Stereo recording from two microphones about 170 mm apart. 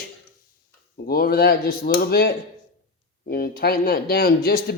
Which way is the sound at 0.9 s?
60° left (ahead or behind).